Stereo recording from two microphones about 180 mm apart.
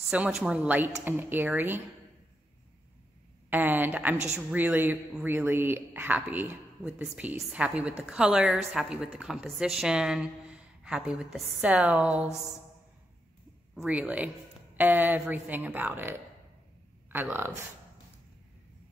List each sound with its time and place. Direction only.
0.0 s speech: 5° right (ahead or behind)
3.4 s a woman's voice: 10° right (ahead or behind)
13.7 s speech: 10° right (ahead or behind)